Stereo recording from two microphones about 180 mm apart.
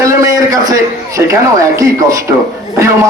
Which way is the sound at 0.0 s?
20° right (ahead or behind).